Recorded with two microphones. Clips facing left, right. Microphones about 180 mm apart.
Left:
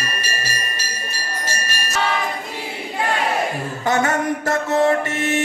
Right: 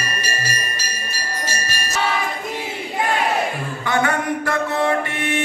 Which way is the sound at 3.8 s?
40° left (ahead or behind).